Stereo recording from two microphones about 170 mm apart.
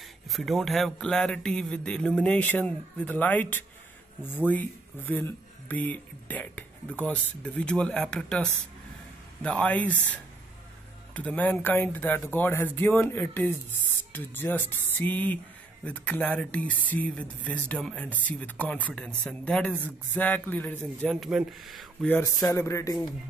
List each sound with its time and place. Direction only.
0.3 s speech: centre (ahead or behind)
11.1 s speech: 10° left (ahead or behind)
22.1 s speech: 15° left (ahead or behind)